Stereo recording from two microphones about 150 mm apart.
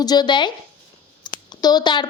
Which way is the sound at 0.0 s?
25° left (ahead or behind).